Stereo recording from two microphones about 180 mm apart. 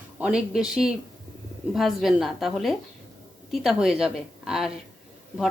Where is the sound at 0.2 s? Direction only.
5° right (ahead or behind).